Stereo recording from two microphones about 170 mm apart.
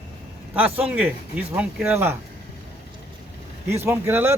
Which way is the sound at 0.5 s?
10° right (ahead or behind).